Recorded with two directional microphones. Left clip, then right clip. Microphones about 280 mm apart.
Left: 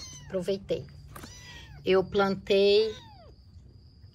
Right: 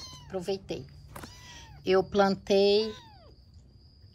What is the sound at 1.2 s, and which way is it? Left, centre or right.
Cat, right.